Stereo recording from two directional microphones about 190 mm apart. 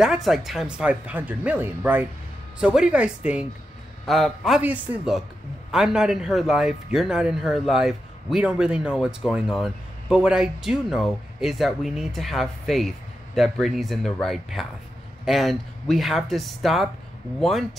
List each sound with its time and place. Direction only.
0.0 s a man's voice: centre (ahead or behind)